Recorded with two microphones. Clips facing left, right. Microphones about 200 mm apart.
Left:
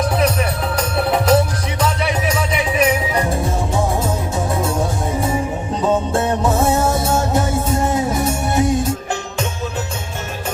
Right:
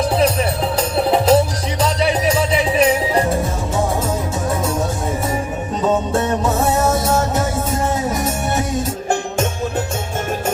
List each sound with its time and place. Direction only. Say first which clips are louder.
0.8 s music: right 2 dB; 30° right (ahead or behind)